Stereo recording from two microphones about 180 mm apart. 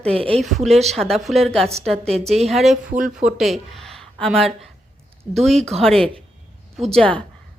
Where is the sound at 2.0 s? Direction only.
35° right (ahead or behind).